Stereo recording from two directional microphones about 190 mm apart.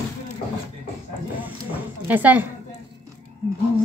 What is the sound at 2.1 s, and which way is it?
Speech, 10° right (ahead or behind).